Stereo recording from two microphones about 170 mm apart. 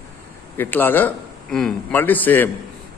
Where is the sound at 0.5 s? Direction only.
10° left (ahead or behind).